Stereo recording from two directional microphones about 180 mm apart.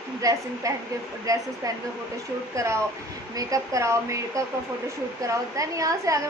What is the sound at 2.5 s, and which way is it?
A woman's voice, 15° right (ahead or behind).